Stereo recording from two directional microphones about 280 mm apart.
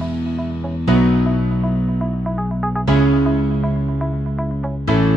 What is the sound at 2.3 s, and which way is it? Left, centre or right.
Music, centre.